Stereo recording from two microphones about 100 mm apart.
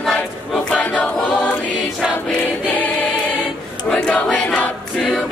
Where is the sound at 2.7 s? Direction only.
15° left (ahead or behind).